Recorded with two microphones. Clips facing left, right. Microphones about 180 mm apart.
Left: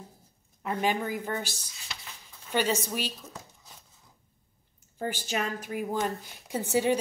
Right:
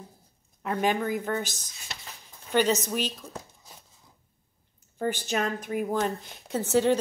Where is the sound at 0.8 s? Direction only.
50° right (ahead or behind).